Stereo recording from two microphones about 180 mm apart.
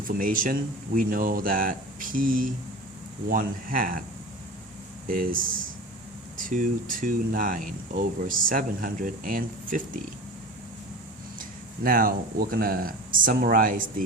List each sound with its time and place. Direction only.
0.1 s speech: 50° right (ahead or behind)
5.0 s speech: 50° right (ahead or behind)
11.3 s speech: 50° right (ahead or behind)